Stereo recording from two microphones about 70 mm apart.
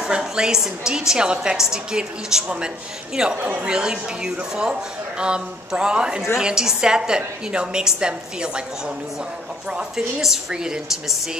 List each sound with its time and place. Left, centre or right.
0.0 s a woman's voice: centre
3.3 s a woman's voice: right
3.6 s a woman's voice: centre